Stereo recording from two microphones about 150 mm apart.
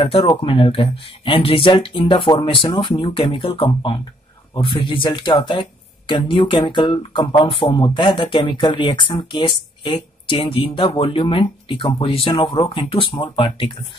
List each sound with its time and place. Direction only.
0.0 s speech: 35° left (ahead or behind)